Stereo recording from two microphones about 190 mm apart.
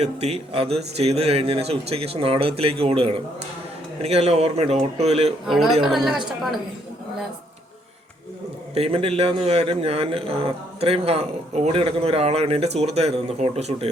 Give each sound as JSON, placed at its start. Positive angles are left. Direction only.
{"t": 0.0, "sound": "a man's voice", "side_deg": -35}
{"t": 5.5, "sound": "a woman's voice", "side_deg": 0}
{"t": 8.7, "sound": "a man's voice", "side_deg": -30}